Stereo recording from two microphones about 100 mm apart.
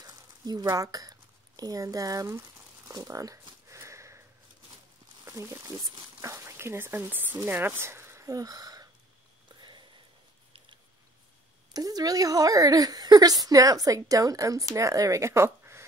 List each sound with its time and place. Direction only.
0.0 s a sound: 40° right (ahead or behind)
1.6 s speech: 35° right (ahead or behind)
3.6 s sniff: 30° right (ahead or behind)
5.2 s speech: 30° right (ahead or behind)
9.5 s a sound: 50° right (ahead or behind)
11.7 s a woman's voice: 40° right (ahead or behind)